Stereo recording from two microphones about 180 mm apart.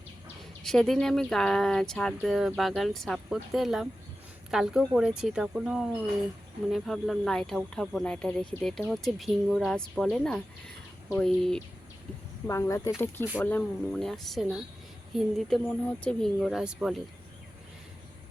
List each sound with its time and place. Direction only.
0.6 s speech: centre (ahead or behind)
12.5 s speech: 15° left (ahead or behind); by 17.0 s centre (ahead or behind)